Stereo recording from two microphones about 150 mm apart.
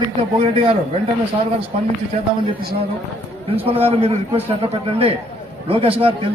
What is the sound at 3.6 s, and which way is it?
Speech, 40° right (ahead or behind).